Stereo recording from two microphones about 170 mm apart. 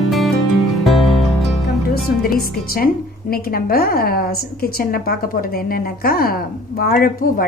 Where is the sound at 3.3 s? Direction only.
60° left (ahead or behind).